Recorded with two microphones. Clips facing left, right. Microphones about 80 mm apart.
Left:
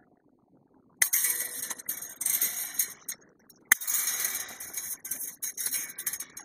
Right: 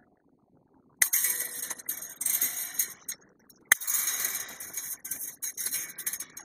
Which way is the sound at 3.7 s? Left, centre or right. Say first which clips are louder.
Even; centre.